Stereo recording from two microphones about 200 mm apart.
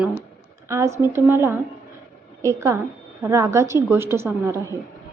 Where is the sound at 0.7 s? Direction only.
15° right (ahead or behind).